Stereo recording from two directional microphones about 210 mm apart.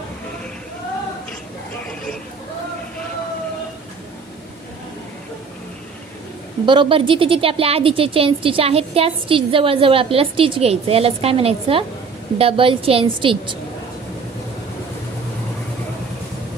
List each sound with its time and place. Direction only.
6.7 s speech: 25° right (ahead or behind)